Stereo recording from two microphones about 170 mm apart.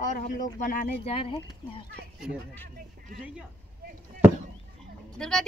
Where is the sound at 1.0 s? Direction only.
35° left (ahead or behind).